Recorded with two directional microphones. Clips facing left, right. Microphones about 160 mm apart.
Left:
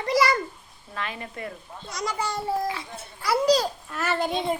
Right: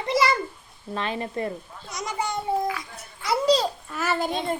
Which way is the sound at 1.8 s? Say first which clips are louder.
Even; 20° right (ahead or behind).